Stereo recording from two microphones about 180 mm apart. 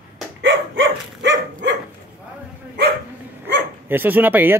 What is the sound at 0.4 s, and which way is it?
Dog, 90° right.